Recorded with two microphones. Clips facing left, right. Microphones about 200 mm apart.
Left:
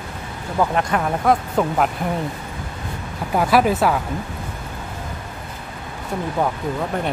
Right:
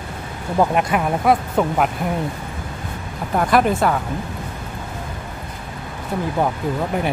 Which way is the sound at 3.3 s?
5° left (ahead or behind).